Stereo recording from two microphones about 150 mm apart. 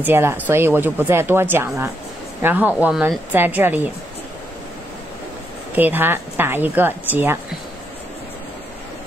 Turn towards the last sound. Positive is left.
turn(degrees=-15)  # may be behind; listen again after turning